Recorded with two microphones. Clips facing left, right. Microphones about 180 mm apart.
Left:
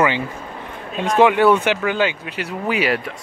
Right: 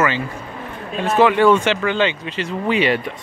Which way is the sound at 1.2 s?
15° left (ahead or behind).